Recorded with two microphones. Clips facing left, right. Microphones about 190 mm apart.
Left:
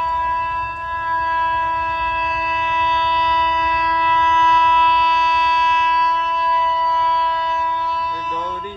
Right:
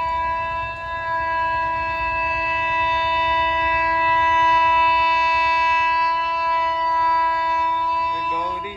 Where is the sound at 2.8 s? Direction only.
10° right (ahead or behind).